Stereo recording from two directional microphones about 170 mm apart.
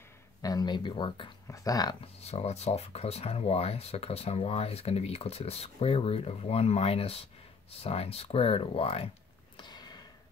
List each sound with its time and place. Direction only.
0.4 s speech: 20° left (ahead or behind)
1.5 s speech: 20° left (ahead or behind)
2.1 s speech: 40° left (ahead or behind)
9.6 s a sound: 25° left (ahead or behind)